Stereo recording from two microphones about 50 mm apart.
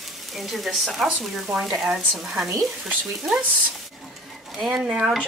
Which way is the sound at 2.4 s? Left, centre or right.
Centre.